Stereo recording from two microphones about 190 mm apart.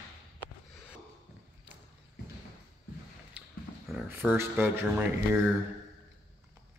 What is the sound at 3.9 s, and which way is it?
Speech, 10° right (ahead or behind).